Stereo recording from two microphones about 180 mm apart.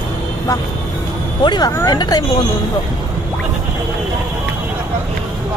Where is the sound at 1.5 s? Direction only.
20° left (ahead or behind).